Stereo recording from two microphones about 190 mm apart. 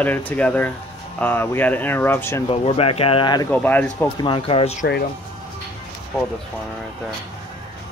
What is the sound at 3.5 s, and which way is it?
Speech, 10° left (ahead or behind).